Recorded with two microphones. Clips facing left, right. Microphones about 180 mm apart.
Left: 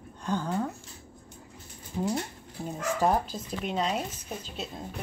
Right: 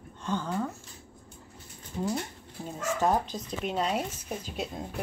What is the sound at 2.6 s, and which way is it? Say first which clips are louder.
Speech: left 1 dB; 15° left (ahead or behind).